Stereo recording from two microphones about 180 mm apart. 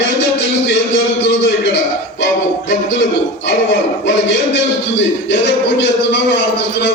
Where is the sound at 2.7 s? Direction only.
80° left.